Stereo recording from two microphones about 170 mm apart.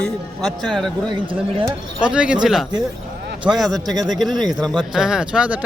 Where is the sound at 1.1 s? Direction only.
30° right (ahead or behind).